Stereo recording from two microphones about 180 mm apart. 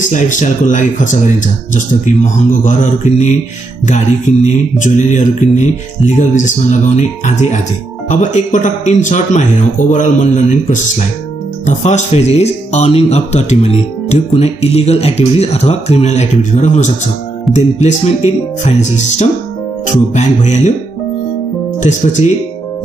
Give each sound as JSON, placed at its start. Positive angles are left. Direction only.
{"t": 0.0, "sound": "speech", "side_deg": 45}
{"t": 4.5, "sound": "speech", "side_deg": 45}
{"t": 21.7, "sound": "speech", "side_deg": 45}